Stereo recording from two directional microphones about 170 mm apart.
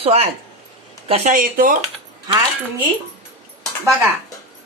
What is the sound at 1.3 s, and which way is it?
Speech, 55° right (ahead or behind).